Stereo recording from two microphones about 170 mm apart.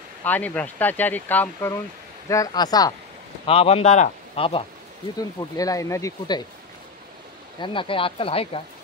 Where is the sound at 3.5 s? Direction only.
35° left (ahead or behind).